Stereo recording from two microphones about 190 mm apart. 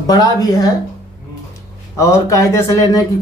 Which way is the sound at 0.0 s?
20° left (ahead or behind).